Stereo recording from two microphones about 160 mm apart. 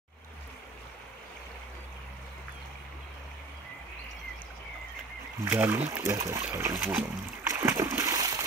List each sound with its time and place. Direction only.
5.5 s speech: 10° right (ahead or behind)
6.1 s splash: 20° right (ahead or behind)